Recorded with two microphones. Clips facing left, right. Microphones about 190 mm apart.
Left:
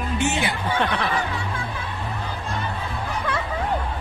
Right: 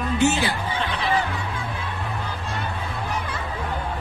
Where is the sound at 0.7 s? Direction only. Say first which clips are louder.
Left 4 dB; 60° left (ahead or behind).